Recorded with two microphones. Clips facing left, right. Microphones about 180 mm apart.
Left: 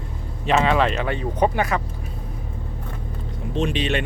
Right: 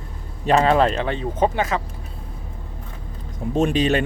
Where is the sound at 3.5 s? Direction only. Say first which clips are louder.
Right 4 dB; 45° right (ahead or behind).